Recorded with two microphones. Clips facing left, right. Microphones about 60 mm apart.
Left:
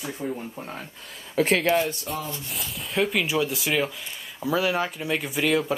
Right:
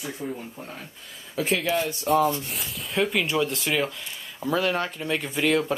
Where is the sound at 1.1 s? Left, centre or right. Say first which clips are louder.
Left 4 dB; left.